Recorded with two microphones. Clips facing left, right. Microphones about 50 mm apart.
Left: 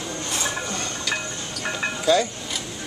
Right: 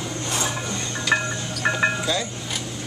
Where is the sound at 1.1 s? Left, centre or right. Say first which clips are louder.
Right 8 dB; right.